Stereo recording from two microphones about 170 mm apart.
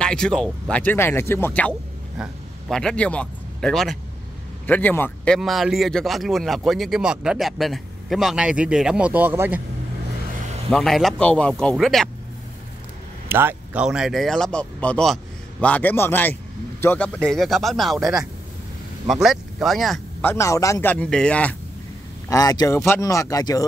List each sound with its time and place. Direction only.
0.0 s speech: 5° left (ahead or behind); by 9.6 s 10° right (ahead or behind)
10.7 s speech: centre (ahead or behind)
13.3 s speech: 10° right (ahead or behind)
20.2 s speech: 15° left (ahead or behind)
22.3 s speech: 20° left (ahead or behind)